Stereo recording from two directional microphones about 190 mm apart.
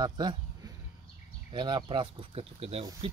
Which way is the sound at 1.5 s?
25° right (ahead or behind).